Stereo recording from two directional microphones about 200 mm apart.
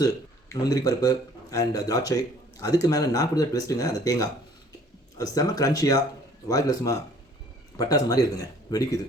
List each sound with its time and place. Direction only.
0.0 s a man's voice: 20° left (ahead or behind)